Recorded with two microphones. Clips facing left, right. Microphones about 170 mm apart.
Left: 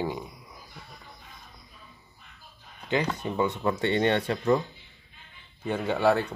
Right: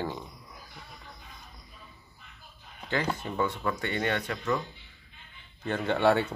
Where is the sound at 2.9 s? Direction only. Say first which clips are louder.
Left 3 dB; 15° left (ahead or behind).